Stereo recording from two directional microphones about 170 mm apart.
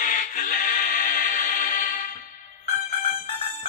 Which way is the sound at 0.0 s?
50° left (ahead or behind).